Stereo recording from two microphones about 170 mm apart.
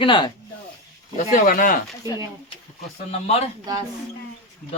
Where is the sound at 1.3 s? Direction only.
50° left (ahead or behind).